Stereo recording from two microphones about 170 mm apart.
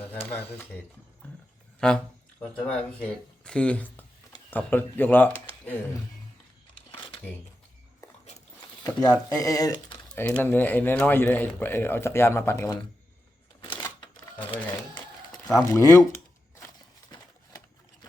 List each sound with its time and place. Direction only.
0.0 s a sound: 10° left (ahead or behind)
0.3 s speech: 10° left (ahead or behind)
8.8 s speech: 20° left (ahead or behind)
13.6 s typewriter: 30° left (ahead or behind)
15.5 s speech: 15° left (ahead or behind)